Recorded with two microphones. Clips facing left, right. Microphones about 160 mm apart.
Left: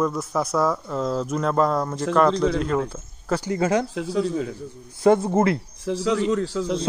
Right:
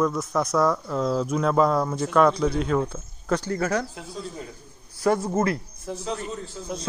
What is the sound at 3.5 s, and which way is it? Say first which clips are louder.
Speech: left 7 dB; 20° left (ahead or behind).